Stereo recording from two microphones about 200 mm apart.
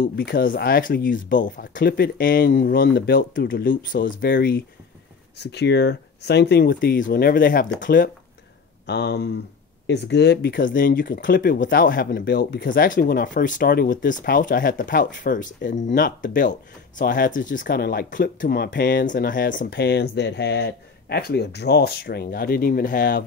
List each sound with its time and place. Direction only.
0.0 s speech: 50° left (ahead or behind)
8.8 s speech: 60° left (ahead or behind)